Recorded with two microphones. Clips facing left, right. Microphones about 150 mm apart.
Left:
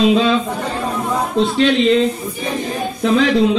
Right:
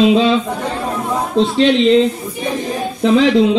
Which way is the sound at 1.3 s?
25° right (ahead or behind).